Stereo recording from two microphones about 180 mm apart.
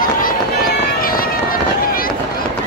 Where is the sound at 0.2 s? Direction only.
50° left (ahead or behind).